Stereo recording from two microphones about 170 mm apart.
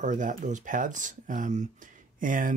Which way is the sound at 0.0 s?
50° right (ahead or behind).